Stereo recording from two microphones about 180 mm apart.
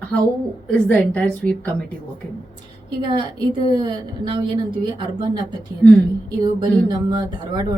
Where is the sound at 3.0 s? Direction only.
25° right (ahead or behind).